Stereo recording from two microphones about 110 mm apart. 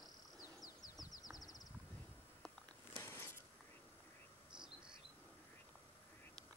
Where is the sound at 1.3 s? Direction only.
35° left (ahead or behind).